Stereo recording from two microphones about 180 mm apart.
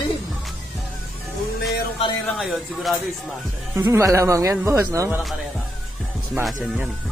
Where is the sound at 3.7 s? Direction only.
15° right (ahead or behind).